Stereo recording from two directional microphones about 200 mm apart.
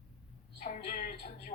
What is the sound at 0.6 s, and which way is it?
Speech, 45° left (ahead or behind).